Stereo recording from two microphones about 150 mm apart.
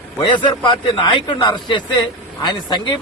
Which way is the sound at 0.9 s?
35° left (ahead or behind).